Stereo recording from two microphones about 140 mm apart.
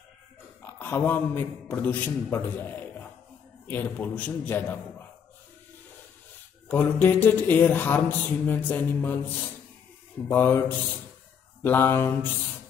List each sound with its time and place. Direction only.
0.7 s a man's voice: 15° left (ahead or behind)
6.7 s a man's voice: 15° left (ahead or behind)
10.2 s a man's voice: 15° left (ahead or behind)